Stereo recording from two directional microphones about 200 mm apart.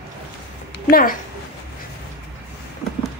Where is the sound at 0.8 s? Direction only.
45° left (ahead or behind).